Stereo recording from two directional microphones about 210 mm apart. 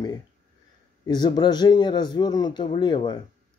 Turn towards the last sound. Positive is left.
turn(degrees=20)  # may be behind; listen again after turning